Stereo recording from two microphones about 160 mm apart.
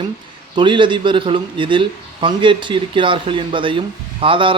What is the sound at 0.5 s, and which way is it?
A man's voice, 30° right (ahead or behind).